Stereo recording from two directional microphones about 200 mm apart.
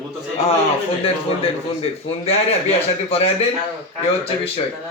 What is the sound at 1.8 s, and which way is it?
Speech, 30° left (ahead or behind).